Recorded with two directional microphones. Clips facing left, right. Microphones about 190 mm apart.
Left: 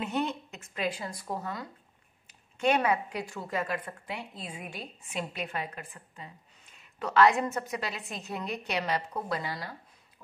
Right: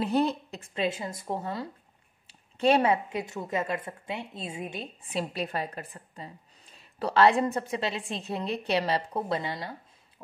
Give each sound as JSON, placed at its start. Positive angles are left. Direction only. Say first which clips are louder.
{"t": 0.0, "sound": "a woman's voice", "louder": "right 6 dB", "side_deg": -35}